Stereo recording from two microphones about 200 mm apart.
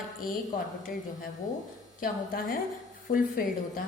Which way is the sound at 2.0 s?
45° left (ahead or behind).